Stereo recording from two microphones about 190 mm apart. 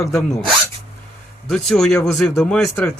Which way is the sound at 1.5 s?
Centre (ahead or behind).